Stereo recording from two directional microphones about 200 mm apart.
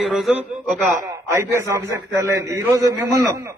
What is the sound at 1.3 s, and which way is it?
A man's voice, 15° right (ahead or behind).